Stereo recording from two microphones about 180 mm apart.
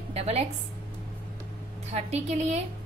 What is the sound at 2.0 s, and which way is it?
Speech, 35° right (ahead or behind).